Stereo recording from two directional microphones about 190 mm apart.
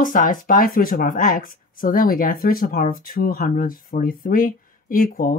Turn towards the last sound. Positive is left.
turn(degrees=45)  # may be behind; listen again after turning